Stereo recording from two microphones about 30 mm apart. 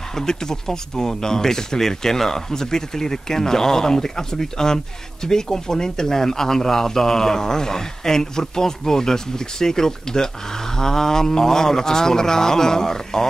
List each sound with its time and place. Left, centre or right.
0.1 s speech: centre